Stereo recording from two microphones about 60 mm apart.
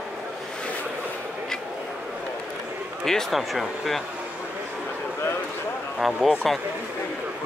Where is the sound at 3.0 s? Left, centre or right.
Centre.